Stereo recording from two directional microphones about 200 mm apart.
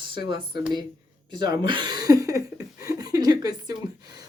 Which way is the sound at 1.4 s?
20° right (ahead or behind).